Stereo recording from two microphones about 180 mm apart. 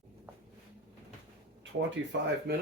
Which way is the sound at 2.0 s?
90° right.